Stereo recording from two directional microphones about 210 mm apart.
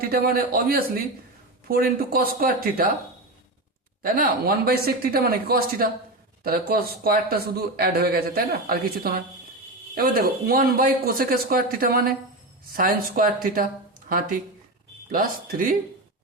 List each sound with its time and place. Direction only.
0.0 s speech: 45° right (ahead or behind)
4.0 s speech: 45° right (ahead or behind)